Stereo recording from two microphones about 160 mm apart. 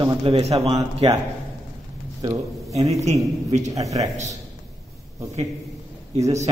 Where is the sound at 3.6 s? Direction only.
20° right (ahead or behind).